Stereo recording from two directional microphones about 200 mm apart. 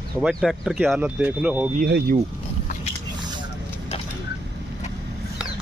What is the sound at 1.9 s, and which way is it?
Speech, 55° right (ahead or behind).